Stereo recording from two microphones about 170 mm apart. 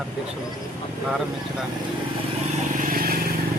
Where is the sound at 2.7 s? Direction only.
55° right (ahead or behind).